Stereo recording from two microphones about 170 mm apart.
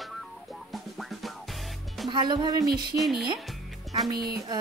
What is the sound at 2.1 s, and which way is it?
Speech, 25° right (ahead or behind).